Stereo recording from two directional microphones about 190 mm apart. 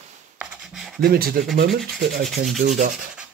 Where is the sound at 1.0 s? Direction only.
50° right (ahead or behind).